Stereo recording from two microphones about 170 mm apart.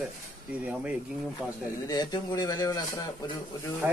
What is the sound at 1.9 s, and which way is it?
Speech, 25° left (ahead or behind).